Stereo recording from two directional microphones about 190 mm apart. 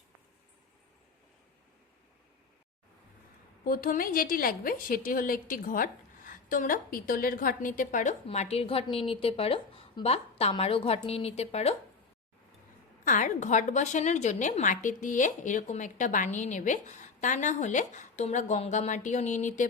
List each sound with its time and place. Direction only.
3.6 s a woman's voice: 50° left (ahead or behind); by 11.7 s 30° left (ahead or behind)
13.1 s a woman's voice: 40° left (ahead or behind)